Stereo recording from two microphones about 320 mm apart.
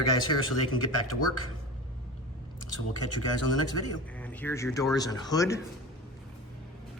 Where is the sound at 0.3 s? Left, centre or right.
Left.